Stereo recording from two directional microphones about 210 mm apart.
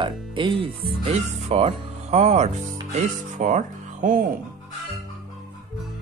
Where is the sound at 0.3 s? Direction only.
25° right (ahead or behind).